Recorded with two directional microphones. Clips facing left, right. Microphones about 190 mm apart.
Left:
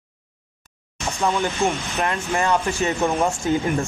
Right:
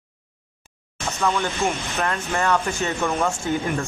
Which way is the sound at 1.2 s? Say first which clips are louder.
Left 1 dB; 15° left (ahead or behind).